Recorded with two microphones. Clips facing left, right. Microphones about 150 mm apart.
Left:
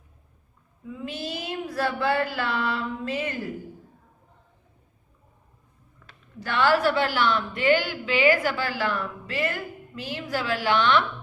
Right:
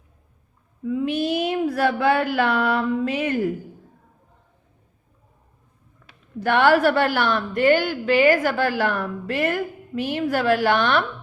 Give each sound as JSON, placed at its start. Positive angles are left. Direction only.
{"t": 0.9, "sound": "child singing", "side_deg": -65}
{"t": 6.4, "sound": "a woman's voice", "side_deg": -60}